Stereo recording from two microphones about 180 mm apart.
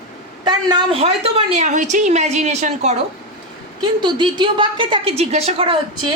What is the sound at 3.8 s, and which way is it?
A woman's voice, 25° right (ahead or behind).